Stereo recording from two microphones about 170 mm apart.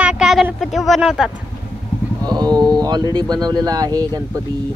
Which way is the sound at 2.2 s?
25° right (ahead or behind).